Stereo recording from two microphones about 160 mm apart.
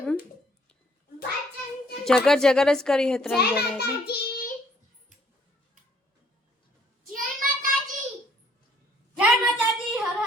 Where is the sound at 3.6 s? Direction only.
80° left.